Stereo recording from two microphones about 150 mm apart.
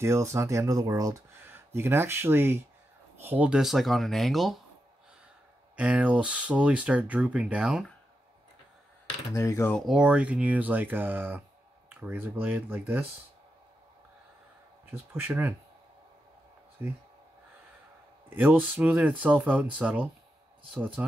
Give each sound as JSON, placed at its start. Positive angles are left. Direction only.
{"t": 0.0, "sound": "speech", "side_deg": -20}
{"t": 5.8, "sound": "speech", "side_deg": -10}
{"t": 9.3, "sound": "speech", "side_deg": 20}
{"t": 9.8, "sound": "speech", "side_deg": -5}
{"t": 15.1, "sound": "speech", "side_deg": -15}
{"t": 16.8, "sound": "speech", "side_deg": -15}
{"t": 18.3, "sound": "speech", "side_deg": -10}